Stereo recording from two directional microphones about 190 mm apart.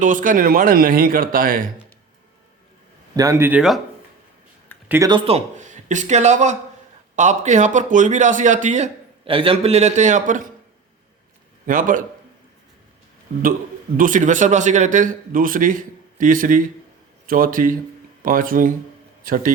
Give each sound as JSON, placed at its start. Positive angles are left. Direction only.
{"t": 0.0, "sound": "speech", "side_deg": -45}
{"t": 3.2, "sound": "speech", "side_deg": -15}
{"t": 4.9, "sound": "a man's voice", "side_deg": -20}
{"t": 11.6, "sound": "a man's voice", "side_deg": -45}
{"t": 13.9, "sound": "speech", "side_deg": -45}